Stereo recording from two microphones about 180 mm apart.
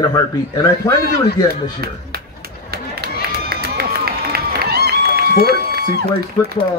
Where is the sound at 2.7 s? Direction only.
60° right (ahead or behind).